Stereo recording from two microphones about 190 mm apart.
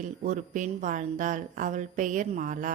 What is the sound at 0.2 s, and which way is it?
A woman's voice, 40° right (ahead or behind).